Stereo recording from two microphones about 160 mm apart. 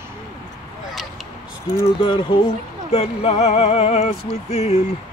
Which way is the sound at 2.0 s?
30° left (ahead or behind).